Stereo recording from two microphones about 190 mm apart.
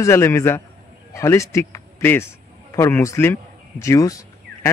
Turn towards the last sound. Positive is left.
turn(degrees=20)  # may be behind; listen again after turning